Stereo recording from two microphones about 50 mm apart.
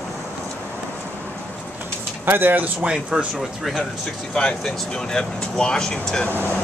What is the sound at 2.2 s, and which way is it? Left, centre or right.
Speech, right.